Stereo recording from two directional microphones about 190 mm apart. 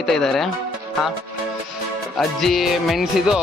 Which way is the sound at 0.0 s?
Centre (ahead or behind).